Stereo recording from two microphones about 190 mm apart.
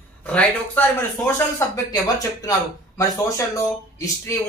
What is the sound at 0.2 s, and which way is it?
Speech, 10° left (ahead or behind).